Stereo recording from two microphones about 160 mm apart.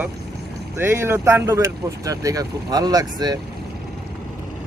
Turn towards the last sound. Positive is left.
turn(degrees=-25)  # may be behind; listen again after turning